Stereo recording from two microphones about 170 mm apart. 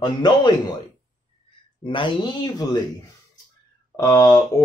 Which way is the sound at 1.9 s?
30° left (ahead or behind).